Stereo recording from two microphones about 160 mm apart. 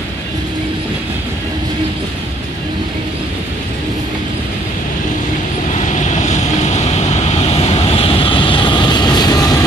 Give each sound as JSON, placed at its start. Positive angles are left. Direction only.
{"t": 5.8, "sound": "vehicle", "side_deg": 50}